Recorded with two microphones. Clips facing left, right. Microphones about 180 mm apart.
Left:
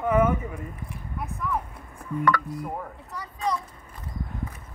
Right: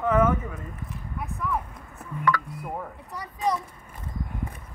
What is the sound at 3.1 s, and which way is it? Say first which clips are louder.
Speech: right 2 dB; 20° right (ahead or behind).